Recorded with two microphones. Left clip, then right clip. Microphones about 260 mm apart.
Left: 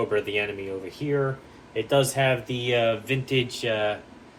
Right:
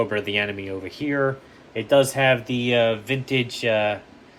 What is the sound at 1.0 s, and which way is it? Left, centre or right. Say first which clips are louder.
Speech: right 1 dB; right.